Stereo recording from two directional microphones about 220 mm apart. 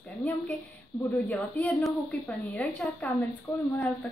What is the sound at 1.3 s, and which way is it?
A woman's voice, 5° left (ahead or behind).